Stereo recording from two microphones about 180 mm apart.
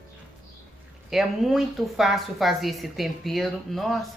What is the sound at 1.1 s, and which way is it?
A woman's voice, centre (ahead or behind).